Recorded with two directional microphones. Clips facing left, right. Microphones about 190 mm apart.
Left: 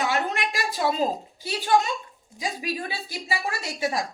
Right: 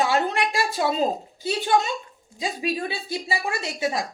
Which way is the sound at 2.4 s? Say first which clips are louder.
Right 3 dB; 25° right (ahead or behind).